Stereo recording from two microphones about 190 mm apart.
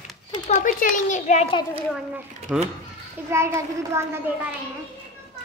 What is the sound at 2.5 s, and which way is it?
Speech, centre (ahead or behind).